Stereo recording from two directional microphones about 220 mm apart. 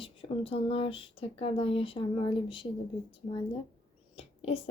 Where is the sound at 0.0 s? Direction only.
25° left (ahead or behind).